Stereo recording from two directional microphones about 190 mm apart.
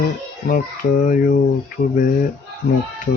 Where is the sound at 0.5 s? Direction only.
45° left (ahead or behind).